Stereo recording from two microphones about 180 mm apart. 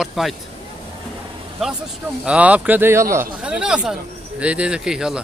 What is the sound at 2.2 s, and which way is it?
A man's voice, 5° right (ahead or behind).